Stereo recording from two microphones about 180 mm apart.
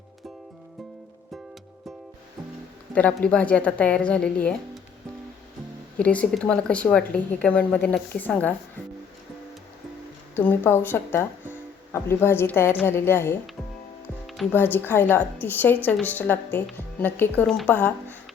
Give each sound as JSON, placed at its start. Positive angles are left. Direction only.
{"t": 2.9, "sound": "speech", "side_deg": 5}
{"t": 6.0, "sound": "speech", "side_deg": 5}
{"t": 10.3, "sound": "speech", "side_deg": 10}
{"t": 14.5, "sound": "speech", "side_deg": 10}